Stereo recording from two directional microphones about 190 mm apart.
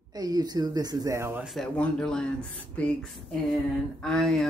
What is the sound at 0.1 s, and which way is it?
Speech, 20° right (ahead or behind).